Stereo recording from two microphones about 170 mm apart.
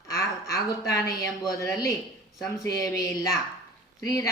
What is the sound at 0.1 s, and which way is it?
A woman's voice, 20° left (ahead or behind).